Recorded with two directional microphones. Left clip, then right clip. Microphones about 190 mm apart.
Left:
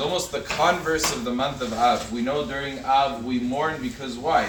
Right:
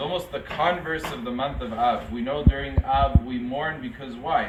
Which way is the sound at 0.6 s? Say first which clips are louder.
Left 3 dB; 15° left (ahead or behind).